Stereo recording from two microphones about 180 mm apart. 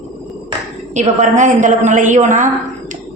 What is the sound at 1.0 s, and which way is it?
A woman's voice, 45° right (ahead or behind).